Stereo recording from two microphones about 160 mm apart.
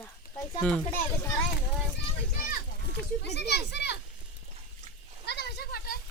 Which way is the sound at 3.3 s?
90° left.